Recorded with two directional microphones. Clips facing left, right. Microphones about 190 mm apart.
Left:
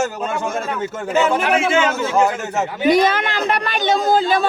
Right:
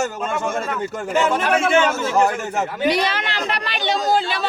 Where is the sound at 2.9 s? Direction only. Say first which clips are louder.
Left 6 dB; 50° left (ahead or behind).